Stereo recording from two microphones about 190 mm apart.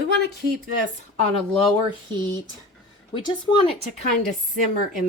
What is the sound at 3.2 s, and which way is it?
Speech, 25° left (ahead or behind).